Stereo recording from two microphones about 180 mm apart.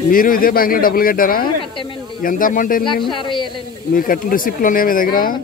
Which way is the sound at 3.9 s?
50° left (ahead or behind).